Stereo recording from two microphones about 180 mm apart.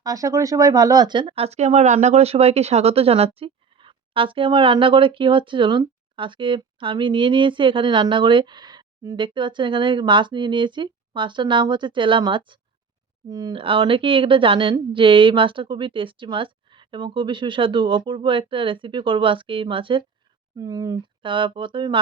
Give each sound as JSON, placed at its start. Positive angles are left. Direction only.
{"t": 0.0, "sound": "speech", "side_deg": -20}